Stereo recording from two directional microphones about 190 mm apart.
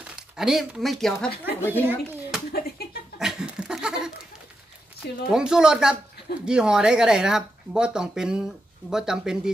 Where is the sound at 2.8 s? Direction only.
55° left (ahead or behind).